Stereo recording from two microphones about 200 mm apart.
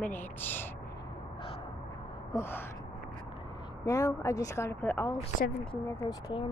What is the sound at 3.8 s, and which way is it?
Speech, 15° left (ahead or behind).